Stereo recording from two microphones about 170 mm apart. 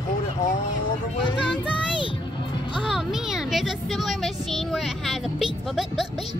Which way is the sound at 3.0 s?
5° right (ahead or behind).